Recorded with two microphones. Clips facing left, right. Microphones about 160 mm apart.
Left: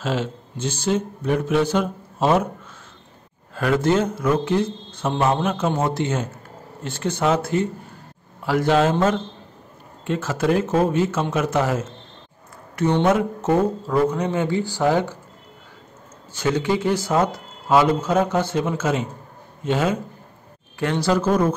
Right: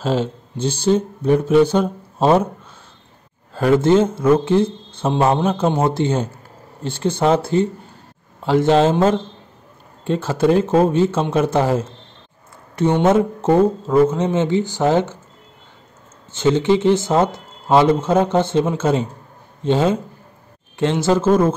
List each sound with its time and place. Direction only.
0.0 s speech: 30° right (ahead or behind)
3.5 s a man's voice: 30° right (ahead or behind)
10.0 s a man's voice: 30° right (ahead or behind)
13.0 s a man's voice: 30° right (ahead or behind)
16.3 s a man's voice: 25° right (ahead or behind)